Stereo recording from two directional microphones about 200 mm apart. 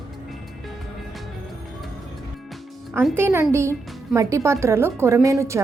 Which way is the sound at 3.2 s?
10° right (ahead or behind).